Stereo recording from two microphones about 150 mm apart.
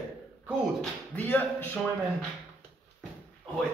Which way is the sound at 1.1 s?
10° left (ahead or behind).